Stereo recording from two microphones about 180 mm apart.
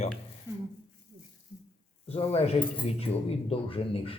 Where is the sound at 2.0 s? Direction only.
35° left (ahead or behind).